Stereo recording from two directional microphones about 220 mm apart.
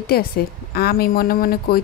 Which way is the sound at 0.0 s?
45° left (ahead or behind).